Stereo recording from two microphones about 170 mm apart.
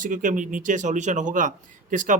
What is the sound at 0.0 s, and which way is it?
Speech, 50° right (ahead or behind).